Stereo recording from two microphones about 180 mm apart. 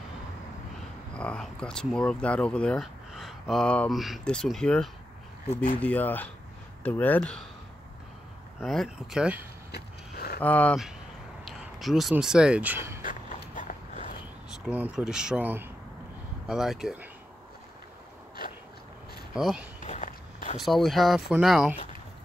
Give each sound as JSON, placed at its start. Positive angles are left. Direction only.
{"t": 1.1, "sound": "speech", "side_deg": 5}
{"t": 8.5, "sound": "speech", "side_deg": 0}
{"t": 9.7, "sound": "a sound", "side_deg": 60}
{"t": 10.4, "sound": "speech", "side_deg": 10}
{"t": 13.0, "sound": "a sound", "side_deg": 45}
{"t": 14.7, "sound": "speech", "side_deg": -5}
{"t": 19.3, "sound": "speech", "side_deg": -5}
{"t": 19.8, "sound": "walk", "side_deg": 40}
{"t": 20.5, "sound": "speech", "side_deg": 0}